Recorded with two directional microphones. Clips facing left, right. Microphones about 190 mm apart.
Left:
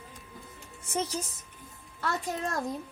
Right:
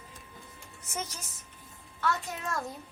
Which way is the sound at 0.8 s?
35° left (ahead or behind).